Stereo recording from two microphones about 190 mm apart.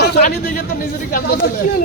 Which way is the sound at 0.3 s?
50° left (ahead or behind).